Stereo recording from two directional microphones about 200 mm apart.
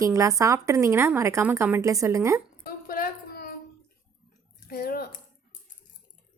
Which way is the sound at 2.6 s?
45° left (ahead or behind).